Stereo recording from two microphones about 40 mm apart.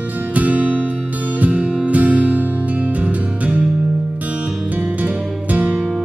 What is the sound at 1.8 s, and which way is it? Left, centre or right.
Music, right.